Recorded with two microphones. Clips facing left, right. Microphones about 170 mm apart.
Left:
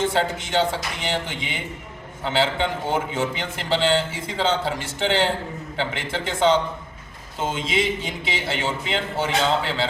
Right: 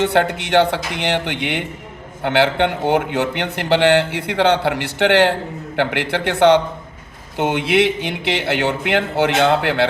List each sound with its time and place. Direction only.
0.0 s a man's voice: 70° right (ahead or behind)